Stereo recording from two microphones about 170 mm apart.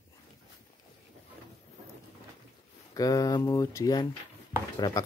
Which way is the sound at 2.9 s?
20° left (ahead or behind).